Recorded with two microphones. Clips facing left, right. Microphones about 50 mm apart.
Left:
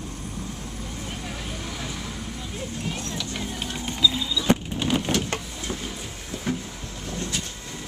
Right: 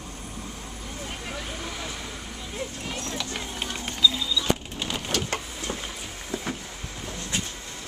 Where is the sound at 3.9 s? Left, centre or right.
Centre.